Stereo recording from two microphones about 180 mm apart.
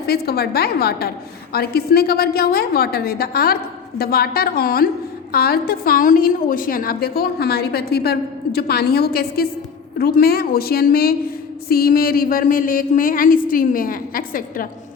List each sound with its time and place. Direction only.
0.1 s a woman's voice: 60° left (ahead or behind)